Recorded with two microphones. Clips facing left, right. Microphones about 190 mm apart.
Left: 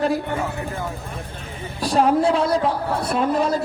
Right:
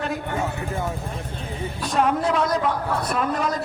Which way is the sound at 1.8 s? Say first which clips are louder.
Left 5 dB; 35° left (ahead or behind).